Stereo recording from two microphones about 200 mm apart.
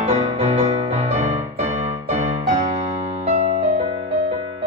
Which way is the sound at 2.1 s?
30° right (ahead or behind).